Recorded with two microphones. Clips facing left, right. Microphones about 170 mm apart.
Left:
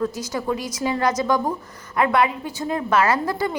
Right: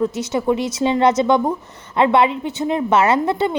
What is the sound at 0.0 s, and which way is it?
Speech, 25° right (ahead or behind).